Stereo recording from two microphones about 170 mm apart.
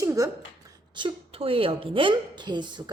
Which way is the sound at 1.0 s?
30° right (ahead or behind).